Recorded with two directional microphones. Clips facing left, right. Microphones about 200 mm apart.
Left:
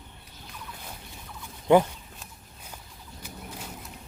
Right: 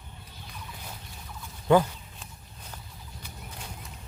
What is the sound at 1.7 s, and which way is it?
Speech, 20° left (ahead or behind).